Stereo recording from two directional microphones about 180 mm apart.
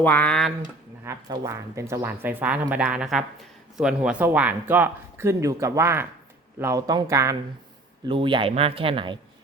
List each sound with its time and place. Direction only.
0.0 s speech: 10° left (ahead or behind)
1.0 s speech: 15° right (ahead or behind)
8.0 s speech: 30° right (ahead or behind)